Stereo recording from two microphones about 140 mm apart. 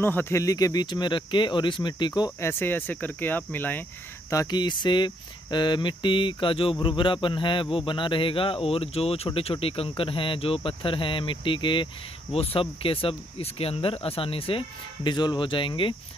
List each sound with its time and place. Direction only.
0.0 s speech: 15° left (ahead or behind)
2.4 s speech: 15° left (ahead or behind)
4.3 s speech: 25° left (ahead or behind)